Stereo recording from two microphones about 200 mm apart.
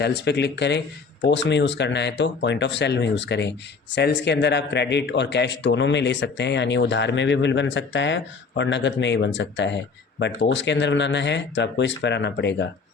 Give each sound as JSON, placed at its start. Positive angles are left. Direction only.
{"t": 0.0, "sound": "a man's voice", "side_deg": 60}